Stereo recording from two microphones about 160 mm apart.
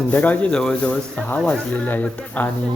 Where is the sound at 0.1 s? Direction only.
10° left (ahead or behind).